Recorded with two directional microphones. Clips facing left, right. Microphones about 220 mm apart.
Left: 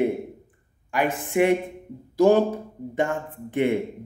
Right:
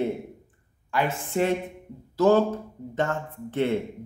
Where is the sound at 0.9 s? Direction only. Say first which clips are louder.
Left 3 dB; 15° left (ahead or behind).